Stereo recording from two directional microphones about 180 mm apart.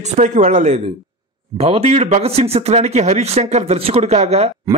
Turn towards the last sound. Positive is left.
turn(degrees=-35)  # may be behind; listen again after turning